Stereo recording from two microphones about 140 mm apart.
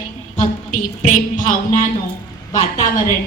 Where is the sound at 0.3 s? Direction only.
65° left (ahead or behind).